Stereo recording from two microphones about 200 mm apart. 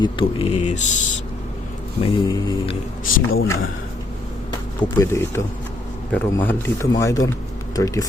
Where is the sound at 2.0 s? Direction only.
20° left (ahead or behind).